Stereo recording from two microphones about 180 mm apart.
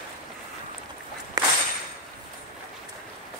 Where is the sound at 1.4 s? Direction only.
20° right (ahead or behind).